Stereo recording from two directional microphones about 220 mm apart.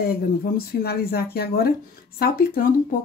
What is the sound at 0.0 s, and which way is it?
Speech, 45° left (ahead or behind).